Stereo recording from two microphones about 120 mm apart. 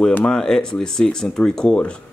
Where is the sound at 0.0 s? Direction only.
10° left (ahead or behind).